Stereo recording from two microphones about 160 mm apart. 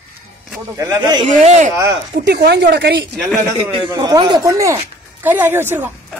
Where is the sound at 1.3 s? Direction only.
50° right (ahead or behind).